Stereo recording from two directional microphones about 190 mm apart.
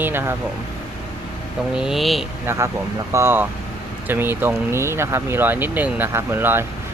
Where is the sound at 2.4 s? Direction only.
15° right (ahead or behind).